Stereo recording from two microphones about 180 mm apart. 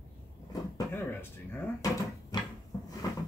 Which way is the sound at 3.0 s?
20° left (ahead or behind).